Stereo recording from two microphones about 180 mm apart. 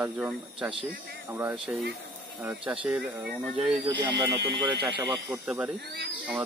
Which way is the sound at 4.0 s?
25° right (ahead or behind).